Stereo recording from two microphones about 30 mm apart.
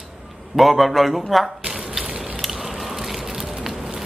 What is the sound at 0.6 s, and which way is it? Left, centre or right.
Speech, centre.